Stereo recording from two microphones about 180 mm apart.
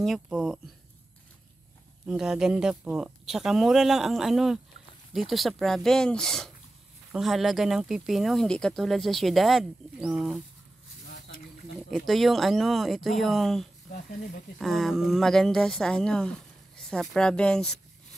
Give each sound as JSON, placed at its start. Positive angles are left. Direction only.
{"t": 0.0, "sound": "speech", "side_deg": 0}
{"t": 2.0, "sound": "speech", "side_deg": -5}
{"t": 11.1, "sound": "a sound", "side_deg": 65}
{"t": 12.1, "sound": "speech", "side_deg": 0}